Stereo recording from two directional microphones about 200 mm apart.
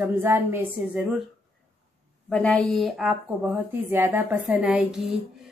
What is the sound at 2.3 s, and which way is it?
A woman's voice, 5° left (ahead or behind).